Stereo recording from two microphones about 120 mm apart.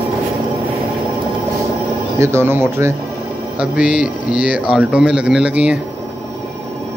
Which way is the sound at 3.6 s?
10° right (ahead or behind).